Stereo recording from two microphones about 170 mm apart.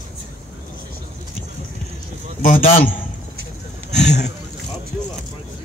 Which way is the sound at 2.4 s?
50° left (ahead or behind).